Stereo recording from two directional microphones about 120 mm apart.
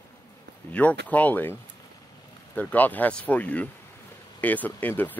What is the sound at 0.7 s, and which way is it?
Speech, 15° left (ahead or behind).